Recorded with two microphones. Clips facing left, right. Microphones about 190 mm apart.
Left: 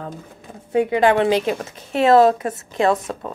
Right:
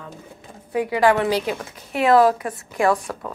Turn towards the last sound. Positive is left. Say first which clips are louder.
# left 1 dB
turn(degrees=20)  # may be behind; listen again after turning